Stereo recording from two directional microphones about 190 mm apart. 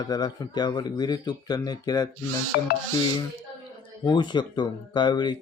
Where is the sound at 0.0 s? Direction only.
20° left (ahead or behind).